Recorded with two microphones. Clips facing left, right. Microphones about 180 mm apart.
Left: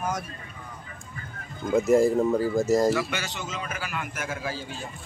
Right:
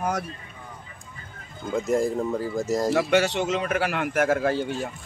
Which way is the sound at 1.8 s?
5° left (ahead or behind).